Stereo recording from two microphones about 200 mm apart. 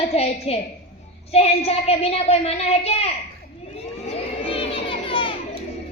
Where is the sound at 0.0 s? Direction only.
30° left (ahead or behind).